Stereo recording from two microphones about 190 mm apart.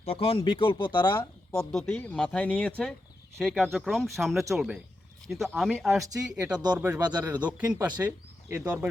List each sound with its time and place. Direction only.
0.0 s speech: 30° left (ahead or behind)
1.5 s speech: 5° left (ahead or behind)